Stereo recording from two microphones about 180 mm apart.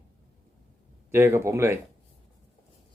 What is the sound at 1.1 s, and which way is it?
Speech, 15° right (ahead or behind).